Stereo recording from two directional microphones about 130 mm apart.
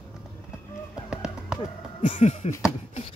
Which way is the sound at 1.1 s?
5° right (ahead or behind).